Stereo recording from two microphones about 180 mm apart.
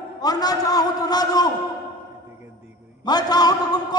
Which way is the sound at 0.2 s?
20° left (ahead or behind).